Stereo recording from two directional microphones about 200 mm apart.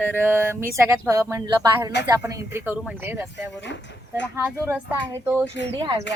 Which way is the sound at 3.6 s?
65° left (ahead or behind).